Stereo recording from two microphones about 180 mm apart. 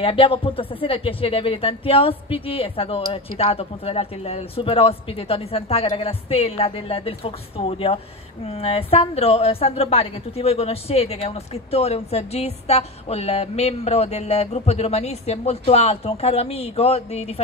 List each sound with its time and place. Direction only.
0.0 s a woman's voice: 30° left (ahead or behind)